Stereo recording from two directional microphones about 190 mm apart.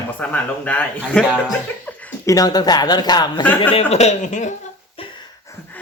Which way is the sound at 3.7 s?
35° left (ahead or behind).